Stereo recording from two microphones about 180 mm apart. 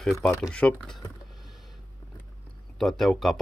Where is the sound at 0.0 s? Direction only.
5° left (ahead or behind).